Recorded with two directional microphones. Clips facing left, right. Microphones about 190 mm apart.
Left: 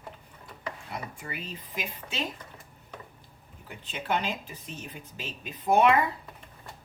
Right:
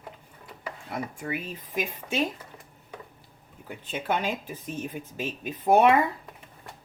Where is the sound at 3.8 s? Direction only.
50° right (ahead or behind).